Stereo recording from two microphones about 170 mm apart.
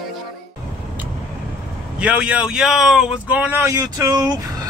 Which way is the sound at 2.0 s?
5° right (ahead or behind).